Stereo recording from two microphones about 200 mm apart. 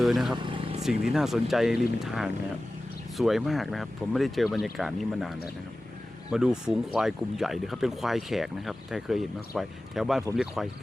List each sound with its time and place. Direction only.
0.0 s speech: centre (ahead or behind)
0.3 s vehicle: 25° right (ahead or behind)
0.8 s speech: centre (ahead or behind)
6.3 s speech: 5° right (ahead or behind)